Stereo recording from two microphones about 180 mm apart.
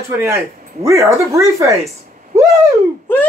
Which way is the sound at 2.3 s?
20° right (ahead or behind).